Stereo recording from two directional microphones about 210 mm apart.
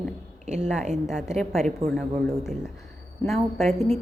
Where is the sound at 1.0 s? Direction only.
Centre (ahead or behind).